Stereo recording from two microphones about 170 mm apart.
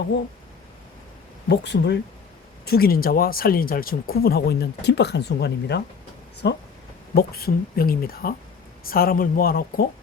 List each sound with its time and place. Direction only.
1.5 s speech: 85° left
2.6 s speech: 60° left (ahead or behind); by 6.6 s 80° left
7.1 s speech: 65° left (ahead or behind)